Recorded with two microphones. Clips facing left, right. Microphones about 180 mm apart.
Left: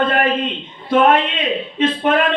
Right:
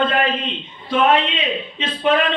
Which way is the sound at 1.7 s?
50° left (ahead or behind).